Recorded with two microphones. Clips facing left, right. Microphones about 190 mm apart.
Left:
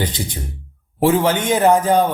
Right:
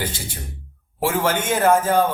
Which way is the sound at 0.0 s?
20° left (ahead or behind).